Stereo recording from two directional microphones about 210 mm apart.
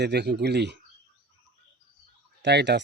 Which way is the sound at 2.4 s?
55° right (ahead or behind).